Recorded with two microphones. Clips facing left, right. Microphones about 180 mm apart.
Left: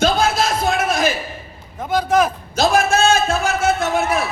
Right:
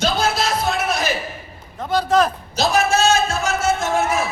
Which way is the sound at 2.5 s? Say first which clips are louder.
Left 2 dB; 55° left (ahead or behind).